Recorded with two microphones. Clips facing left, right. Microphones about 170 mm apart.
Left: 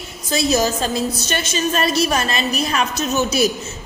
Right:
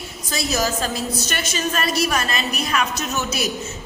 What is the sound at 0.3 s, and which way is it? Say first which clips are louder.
A woman's voice: left 5 dB; 25° left (ahead or behind).